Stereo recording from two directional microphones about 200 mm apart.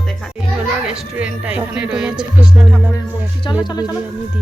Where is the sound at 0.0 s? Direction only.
Centre (ahead or behind).